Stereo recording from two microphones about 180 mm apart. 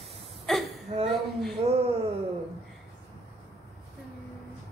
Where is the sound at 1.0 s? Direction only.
Centre (ahead or behind).